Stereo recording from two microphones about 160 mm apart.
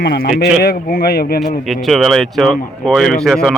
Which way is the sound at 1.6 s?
Centre (ahead or behind).